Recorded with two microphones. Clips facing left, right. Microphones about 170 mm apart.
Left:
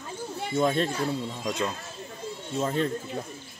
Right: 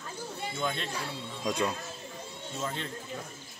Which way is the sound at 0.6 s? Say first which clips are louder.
Left 10 dB; 45° left (ahead or behind).